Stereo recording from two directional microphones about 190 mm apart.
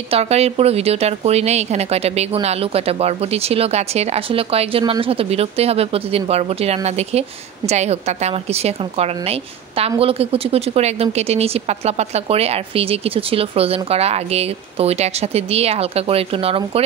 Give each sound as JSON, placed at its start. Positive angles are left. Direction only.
{"t": 0.1, "sound": "speech", "side_deg": -30}